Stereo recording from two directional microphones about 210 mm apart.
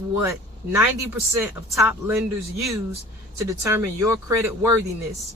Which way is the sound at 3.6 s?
15° right (ahead or behind).